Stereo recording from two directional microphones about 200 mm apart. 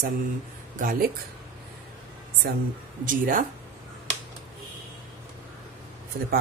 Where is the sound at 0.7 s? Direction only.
45° right (ahead or behind).